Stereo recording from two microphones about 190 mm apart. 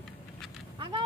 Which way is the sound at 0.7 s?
25° right (ahead or behind).